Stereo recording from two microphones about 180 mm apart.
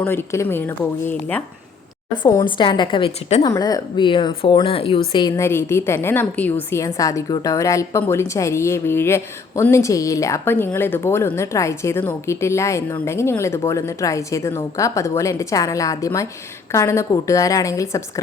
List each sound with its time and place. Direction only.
0.0 s a woman's voice: 15° left (ahead or behind)
2.2 s speech: 25° left (ahead or behind)
3.4 s speech: 20° left (ahead or behind)
5.5 s a woman's voice: 15° left (ahead or behind)